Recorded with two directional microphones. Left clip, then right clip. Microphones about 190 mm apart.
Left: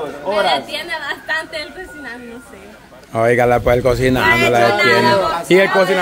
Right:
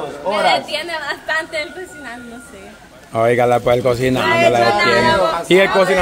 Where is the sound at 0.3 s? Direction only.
15° right (ahead or behind).